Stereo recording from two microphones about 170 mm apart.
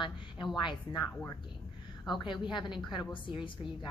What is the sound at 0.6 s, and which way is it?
A woman's voice, 25° left (ahead or behind).